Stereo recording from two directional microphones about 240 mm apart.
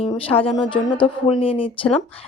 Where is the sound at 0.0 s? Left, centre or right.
Left.